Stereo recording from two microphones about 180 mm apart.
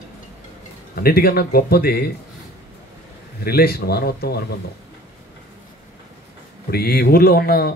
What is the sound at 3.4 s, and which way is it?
Speech, 60° left (ahead or behind).